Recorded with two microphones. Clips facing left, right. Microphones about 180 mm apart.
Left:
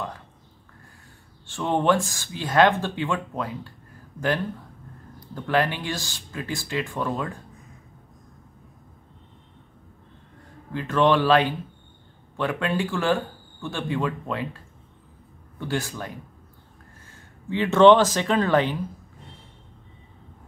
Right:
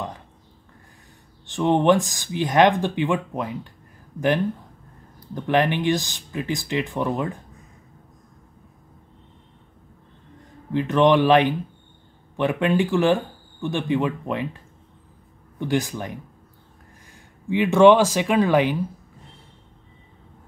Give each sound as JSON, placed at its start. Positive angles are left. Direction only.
{"t": 1.5, "sound": "speech", "side_deg": -20}
{"t": 5.3, "sound": "speech", "side_deg": -20}
{"t": 10.7, "sound": "speech", "side_deg": -20}
{"t": 15.6, "sound": "speech", "side_deg": -15}